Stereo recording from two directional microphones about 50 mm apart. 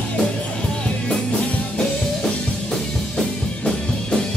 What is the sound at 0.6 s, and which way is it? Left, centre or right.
Music, left.